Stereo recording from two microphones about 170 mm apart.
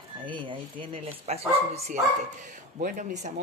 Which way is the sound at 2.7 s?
50° right (ahead or behind).